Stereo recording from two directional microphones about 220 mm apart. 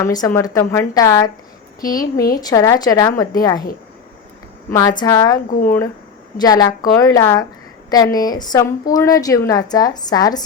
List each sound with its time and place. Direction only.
0.0 s a woman's voice: 15° left (ahead or behind)
1.8 s speech: 40° left (ahead or behind)
2.4 s a woman's voice: 15° left (ahead or behind)
4.7 s a woman's voice: 15° left (ahead or behind)
5.5 s speech: 40° left (ahead or behind)
6.3 s a woman's voice: 20° left (ahead or behind)